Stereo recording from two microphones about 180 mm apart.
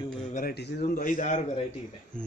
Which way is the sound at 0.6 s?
65° left (ahead or behind).